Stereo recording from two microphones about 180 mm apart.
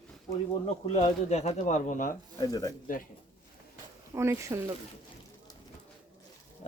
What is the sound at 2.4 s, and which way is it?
Speech, 20° left (ahead or behind).